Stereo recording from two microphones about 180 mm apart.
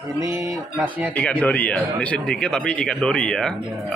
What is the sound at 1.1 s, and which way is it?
Speech, 5° left (ahead or behind).